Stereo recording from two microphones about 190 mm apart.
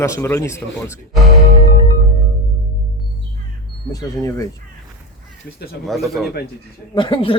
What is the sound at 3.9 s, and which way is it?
Speech, 15° left (ahead or behind).